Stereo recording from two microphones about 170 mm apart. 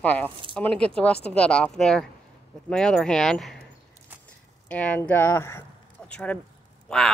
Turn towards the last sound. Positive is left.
turn(degrees=5)  # may be behind; listen again after turning